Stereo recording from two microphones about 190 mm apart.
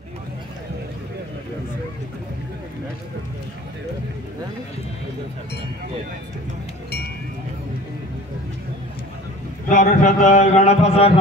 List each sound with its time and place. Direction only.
9.7 s speech: 45° left (ahead or behind)